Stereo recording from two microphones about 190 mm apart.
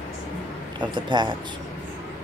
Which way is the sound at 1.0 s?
25° right (ahead or behind).